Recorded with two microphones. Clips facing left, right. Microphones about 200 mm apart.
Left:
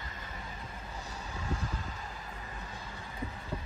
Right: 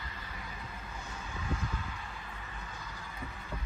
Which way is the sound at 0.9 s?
35° left (ahead or behind).